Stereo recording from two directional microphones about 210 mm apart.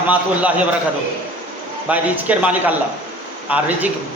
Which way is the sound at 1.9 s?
5° right (ahead or behind).